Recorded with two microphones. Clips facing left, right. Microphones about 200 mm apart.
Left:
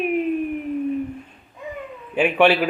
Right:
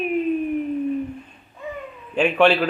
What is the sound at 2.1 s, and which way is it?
Speech, 10° left (ahead or behind).